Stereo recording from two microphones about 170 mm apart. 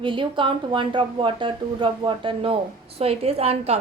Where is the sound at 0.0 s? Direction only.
30° right (ahead or behind).